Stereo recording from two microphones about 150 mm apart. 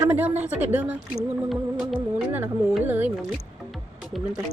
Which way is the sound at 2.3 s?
15° right (ahead or behind).